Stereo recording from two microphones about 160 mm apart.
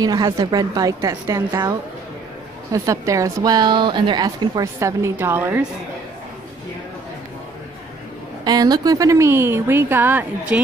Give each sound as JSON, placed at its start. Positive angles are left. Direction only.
{"t": 0.0, "sound": "a woman's voice", "side_deg": -20}
{"t": 8.5, "sound": "a woman's voice", "side_deg": -25}